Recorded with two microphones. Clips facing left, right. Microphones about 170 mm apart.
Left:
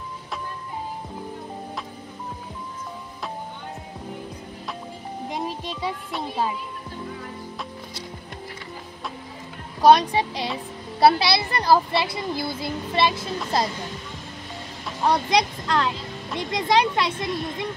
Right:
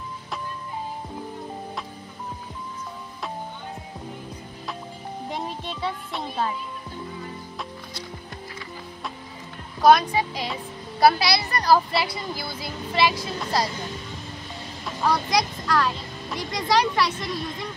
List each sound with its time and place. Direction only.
5.3 s music: 15° left (ahead or behind)
6.1 s a woman's voice: 10° left (ahead or behind)
9.8 s speech: 30° left (ahead or behind)
15.0 s speech: 25° left (ahead or behind)